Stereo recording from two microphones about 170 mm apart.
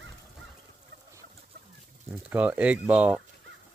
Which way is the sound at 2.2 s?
10° right (ahead or behind).